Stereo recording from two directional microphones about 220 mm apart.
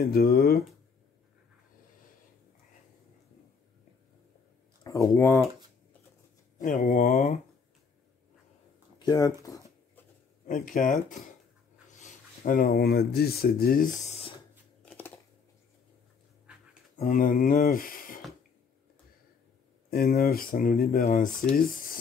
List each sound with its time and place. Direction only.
0.0 s speech: 45° left (ahead or behind)
4.8 s speech: 15° left (ahead or behind)
6.6 s speech: 35° left (ahead or behind)
9.0 s a sound: 15° left (ahead or behind)
10.4 s speech: 35° left (ahead or behind)
14.0 s a sound: 25° left (ahead or behind)
14.9 s a sound: 10° left (ahead or behind)
17.0 s speech: 40° left (ahead or behind)
19.9 s speech: 45° left (ahead or behind)